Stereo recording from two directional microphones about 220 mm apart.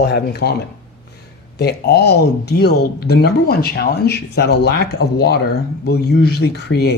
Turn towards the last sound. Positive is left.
turn(degrees=50)  # may be behind; listen again after turning